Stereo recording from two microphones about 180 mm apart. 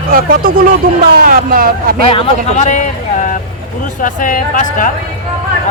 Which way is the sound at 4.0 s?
45° left (ahead or behind).